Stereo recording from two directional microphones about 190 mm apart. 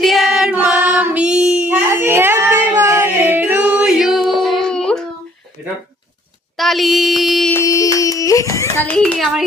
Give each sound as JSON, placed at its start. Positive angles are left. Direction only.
{"t": 0.0, "sound": "singing", "side_deg": 0}
{"t": 6.6, "sound": "a sound", "side_deg": 0}
{"t": 7.5, "sound": "hands", "side_deg": 15}
{"t": 9.0, "sound": "a child's voice", "side_deg": 0}